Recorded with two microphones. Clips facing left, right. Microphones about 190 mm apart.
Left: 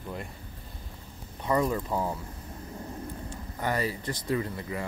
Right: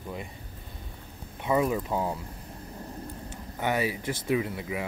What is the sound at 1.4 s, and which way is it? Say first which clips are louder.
Speech: right 1 dB; 5° right (ahead or behind).